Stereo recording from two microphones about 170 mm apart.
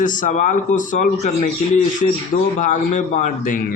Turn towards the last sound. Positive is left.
turn(degrees=50)  # may be behind; listen again after turning